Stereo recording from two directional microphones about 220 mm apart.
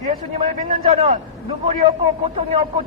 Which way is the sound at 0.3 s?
30° right (ahead or behind).